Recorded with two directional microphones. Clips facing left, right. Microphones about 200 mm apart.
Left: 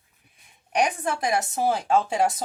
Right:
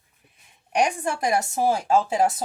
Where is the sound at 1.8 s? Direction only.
10° right (ahead or behind).